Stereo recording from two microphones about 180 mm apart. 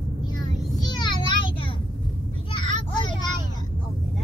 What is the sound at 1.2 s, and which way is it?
Child singing, 25° left (ahead or behind).